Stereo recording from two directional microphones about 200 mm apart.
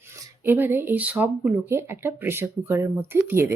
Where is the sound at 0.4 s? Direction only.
10° right (ahead or behind).